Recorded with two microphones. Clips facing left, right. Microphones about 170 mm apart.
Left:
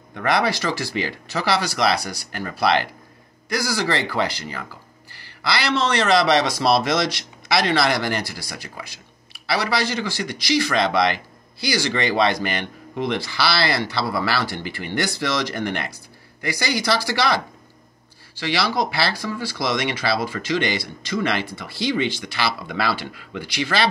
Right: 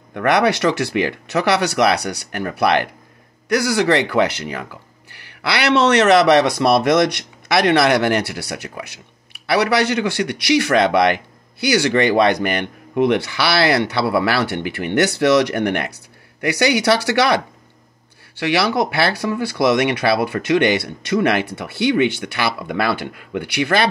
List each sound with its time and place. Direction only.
0.1 s speech: 65° right (ahead or behind)
18.4 s speech: 60° right (ahead or behind)